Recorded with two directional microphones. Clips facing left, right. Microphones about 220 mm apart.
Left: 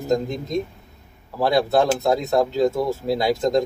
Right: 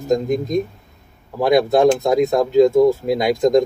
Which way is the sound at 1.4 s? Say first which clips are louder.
Right 5 dB; 15° right (ahead or behind).